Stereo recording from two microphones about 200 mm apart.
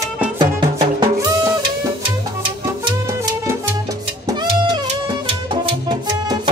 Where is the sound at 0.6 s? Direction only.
20° right (ahead or behind).